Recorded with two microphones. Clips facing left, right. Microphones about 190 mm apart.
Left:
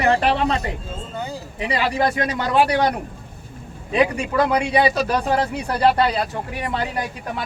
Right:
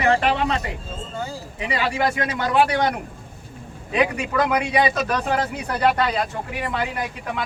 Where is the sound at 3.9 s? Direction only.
30° left (ahead or behind).